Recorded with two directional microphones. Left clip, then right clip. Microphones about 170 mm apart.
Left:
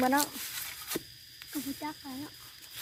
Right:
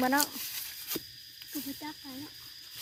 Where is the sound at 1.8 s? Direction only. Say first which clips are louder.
Left 3 dB; 30° left (ahead or behind).